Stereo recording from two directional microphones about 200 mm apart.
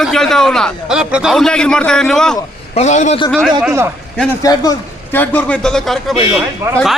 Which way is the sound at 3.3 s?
Centre (ahead or behind).